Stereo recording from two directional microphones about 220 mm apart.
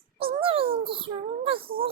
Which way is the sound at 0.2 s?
25° right (ahead or behind).